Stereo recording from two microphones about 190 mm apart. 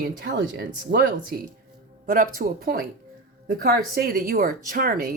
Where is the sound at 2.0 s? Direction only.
45° right (ahead or behind).